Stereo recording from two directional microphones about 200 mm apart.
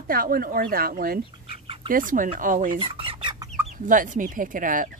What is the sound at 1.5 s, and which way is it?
Duck, 30° right (ahead or behind).